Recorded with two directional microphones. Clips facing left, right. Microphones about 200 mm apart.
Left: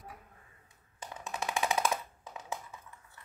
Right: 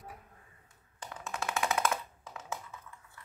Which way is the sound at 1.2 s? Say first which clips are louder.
Even; 20° left (ahead or behind).